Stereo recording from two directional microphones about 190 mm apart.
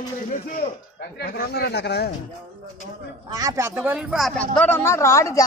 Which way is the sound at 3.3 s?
20° right (ahead or behind).